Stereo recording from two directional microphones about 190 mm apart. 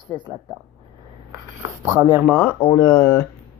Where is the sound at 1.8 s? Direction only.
15° right (ahead or behind).